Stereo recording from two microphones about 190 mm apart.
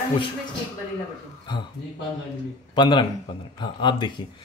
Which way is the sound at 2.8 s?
25° left (ahead or behind).